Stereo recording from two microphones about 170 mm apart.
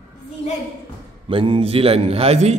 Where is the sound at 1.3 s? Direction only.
30° right (ahead or behind).